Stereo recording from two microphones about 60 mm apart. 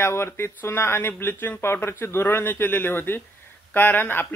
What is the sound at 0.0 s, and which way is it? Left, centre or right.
Speech, left.